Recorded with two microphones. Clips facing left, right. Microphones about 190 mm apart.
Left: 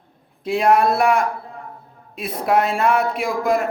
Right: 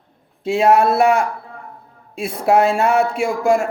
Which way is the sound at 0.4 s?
25° right (ahead or behind).